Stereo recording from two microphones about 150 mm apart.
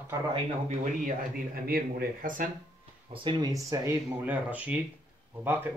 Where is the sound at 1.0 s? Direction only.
75° right (ahead or behind).